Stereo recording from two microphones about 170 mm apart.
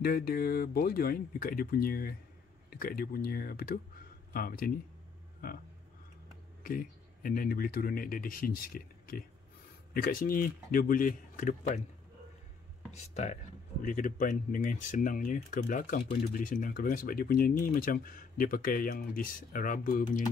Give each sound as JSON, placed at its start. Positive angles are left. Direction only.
{"t": 0.0, "sound": "speech", "side_deg": 60}
{"t": 6.6, "sound": "speech", "side_deg": 55}
{"t": 12.9, "sound": "speech", "side_deg": 40}